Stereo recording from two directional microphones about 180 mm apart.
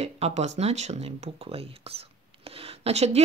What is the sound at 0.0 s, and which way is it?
Speech, 35° right (ahead or behind).